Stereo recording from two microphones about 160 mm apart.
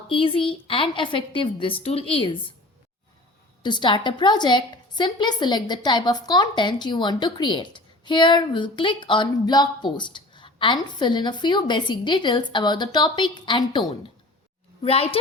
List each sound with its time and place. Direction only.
0.1 s a woman's voice: 35° left (ahead or behind)
3.6 s a woman's voice: 30° left (ahead or behind)